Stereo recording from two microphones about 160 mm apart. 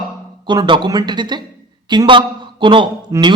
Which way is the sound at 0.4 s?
30° right (ahead or behind).